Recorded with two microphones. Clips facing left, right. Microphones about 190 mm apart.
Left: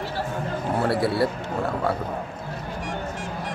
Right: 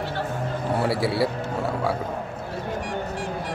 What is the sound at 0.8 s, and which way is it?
Speech, centre (ahead or behind).